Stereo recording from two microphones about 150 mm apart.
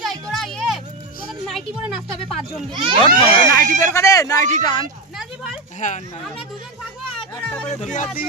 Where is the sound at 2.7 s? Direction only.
30° right (ahead or behind).